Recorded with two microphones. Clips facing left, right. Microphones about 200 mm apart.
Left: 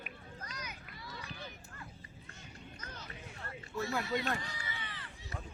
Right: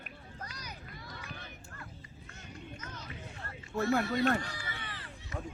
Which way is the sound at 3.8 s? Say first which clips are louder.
Right 7 dB; 55° right (ahead or behind).